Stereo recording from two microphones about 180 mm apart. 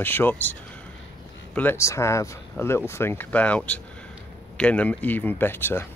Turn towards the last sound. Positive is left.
turn(degrees=10)  # may be behind; listen again after turning